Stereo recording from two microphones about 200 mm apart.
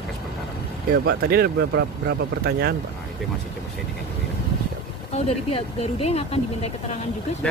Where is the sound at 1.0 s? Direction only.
55° right (ahead or behind).